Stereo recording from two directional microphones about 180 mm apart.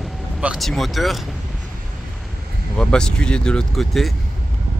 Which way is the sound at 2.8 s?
5° left (ahead or behind).